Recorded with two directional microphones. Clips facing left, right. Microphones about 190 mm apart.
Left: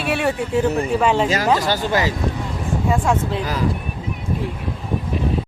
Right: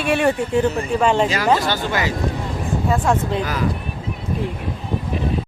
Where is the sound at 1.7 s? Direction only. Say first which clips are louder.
Left 2 dB; 40° left (ahead or behind).